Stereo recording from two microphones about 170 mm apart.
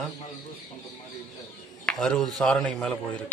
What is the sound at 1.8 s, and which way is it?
Speech, 5° left (ahead or behind).